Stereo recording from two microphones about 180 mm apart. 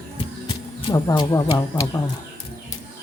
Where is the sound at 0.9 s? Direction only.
20° left (ahead or behind).